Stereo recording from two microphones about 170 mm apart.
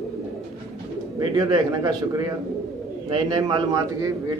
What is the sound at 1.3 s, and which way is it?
A man's voice, 25° right (ahead or behind).